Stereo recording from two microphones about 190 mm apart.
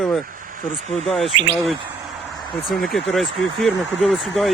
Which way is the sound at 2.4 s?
25° left (ahead or behind).